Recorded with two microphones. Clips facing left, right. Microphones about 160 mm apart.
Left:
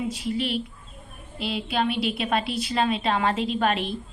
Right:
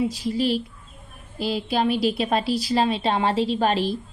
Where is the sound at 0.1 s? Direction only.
35° right (ahead or behind).